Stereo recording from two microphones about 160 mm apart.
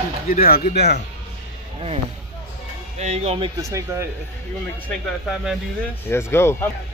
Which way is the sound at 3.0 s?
45° right (ahead or behind).